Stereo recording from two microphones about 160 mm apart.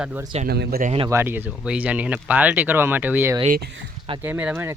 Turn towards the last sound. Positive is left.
turn(degrees=-10)  # may be behind; listen again after turning